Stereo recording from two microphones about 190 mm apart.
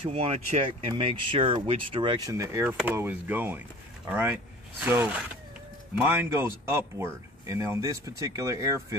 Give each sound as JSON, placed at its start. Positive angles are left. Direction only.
{"t": 0.0, "sound": "speech", "side_deg": -30}